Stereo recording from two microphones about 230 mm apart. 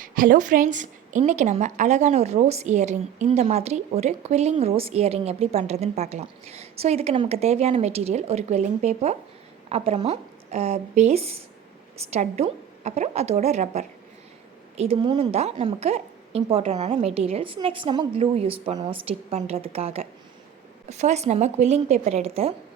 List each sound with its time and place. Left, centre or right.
0.0 s a woman's voice: right